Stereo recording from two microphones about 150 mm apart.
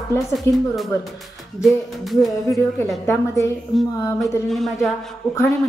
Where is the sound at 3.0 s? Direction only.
20° left (ahead or behind).